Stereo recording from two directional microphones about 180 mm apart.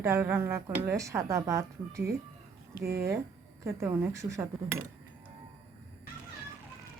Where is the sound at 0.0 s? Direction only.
10° right (ahead or behind).